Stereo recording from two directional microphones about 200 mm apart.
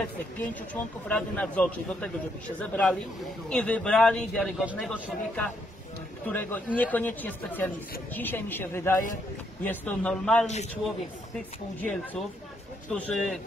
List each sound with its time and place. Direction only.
1.0 s a man's voice: 5° left (ahead or behind)
10.4 s speech: 35° left (ahead or behind)
11.3 s a man's voice: 5° left (ahead or behind)